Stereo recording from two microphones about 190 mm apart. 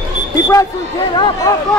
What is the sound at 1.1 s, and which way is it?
Speech, 20° left (ahead or behind).